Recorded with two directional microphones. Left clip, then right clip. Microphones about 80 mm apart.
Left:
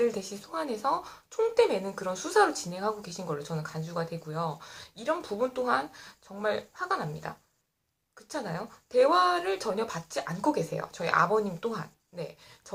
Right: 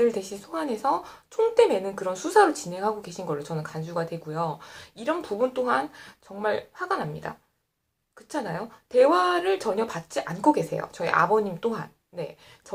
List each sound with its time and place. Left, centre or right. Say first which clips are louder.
0.0 s a woman's voice: right 5 dB; right